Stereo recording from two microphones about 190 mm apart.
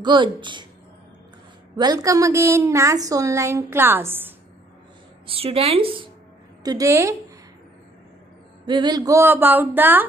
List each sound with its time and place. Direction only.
0.0 s speech: 25° right (ahead or behind)
1.8 s a woman's voice: 20° right (ahead or behind)
5.2 s speech: 30° right (ahead or behind)
6.6 s a woman's voice: 20° right (ahead or behind)
8.6 s a woman's voice: 25° right (ahead or behind)